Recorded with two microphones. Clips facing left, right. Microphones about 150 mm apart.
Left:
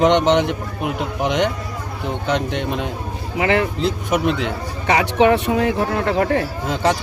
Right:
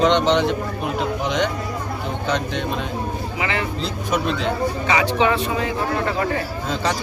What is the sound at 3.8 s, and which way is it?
Speech, 20° left (ahead or behind).